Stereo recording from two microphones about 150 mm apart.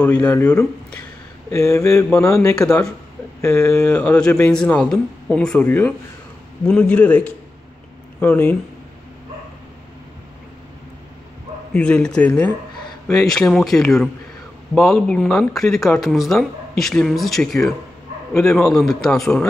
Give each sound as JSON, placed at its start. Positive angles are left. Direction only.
{"t": 0.0, "sound": "speech", "side_deg": 10}
{"t": 1.5, "sound": "mantra", "side_deg": 20}
{"t": 3.3, "sound": "speech", "side_deg": 15}
{"t": 11.7, "sound": "speech", "side_deg": 5}